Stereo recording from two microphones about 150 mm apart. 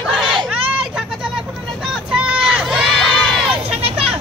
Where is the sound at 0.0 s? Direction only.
Centre (ahead or behind).